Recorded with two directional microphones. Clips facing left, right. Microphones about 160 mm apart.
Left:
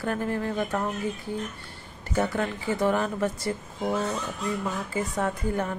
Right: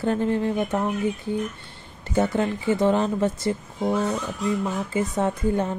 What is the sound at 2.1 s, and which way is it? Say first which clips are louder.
Speech: right 4 dB; 25° right (ahead or behind).